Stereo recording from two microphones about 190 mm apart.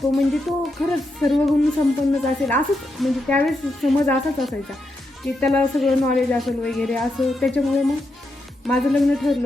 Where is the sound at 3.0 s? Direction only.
5° left (ahead or behind).